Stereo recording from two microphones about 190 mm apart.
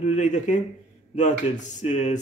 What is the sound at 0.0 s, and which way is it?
A man's voice, 40° left (ahead or behind).